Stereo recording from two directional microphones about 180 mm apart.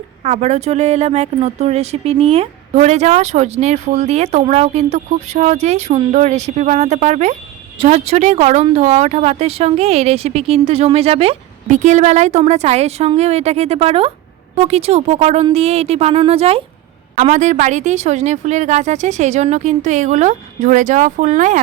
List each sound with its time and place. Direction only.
0.2 s speech: 40° right (ahead or behind)